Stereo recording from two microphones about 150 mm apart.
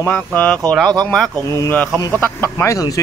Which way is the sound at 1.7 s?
10° left (ahead or behind).